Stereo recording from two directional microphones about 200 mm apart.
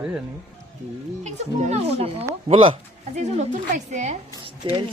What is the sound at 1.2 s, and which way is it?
A woman's voice, 35° right (ahead or behind).